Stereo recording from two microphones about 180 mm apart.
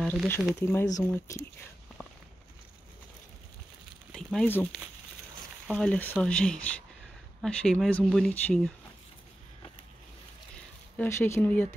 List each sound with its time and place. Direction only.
0.0 s speech: centre (ahead or behind)
0.6 s speech: 15° left (ahead or behind)
4.1 s speech: 5° left (ahead or behind)
5.7 s speech: 5° left (ahead or behind)
11.0 s speech: 15° left (ahead or behind)